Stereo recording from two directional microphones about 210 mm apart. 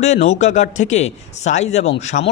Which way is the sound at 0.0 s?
30° left (ahead or behind).